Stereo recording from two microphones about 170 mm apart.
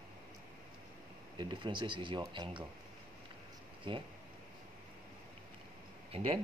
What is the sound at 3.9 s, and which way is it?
Speech, 30° right (ahead or behind).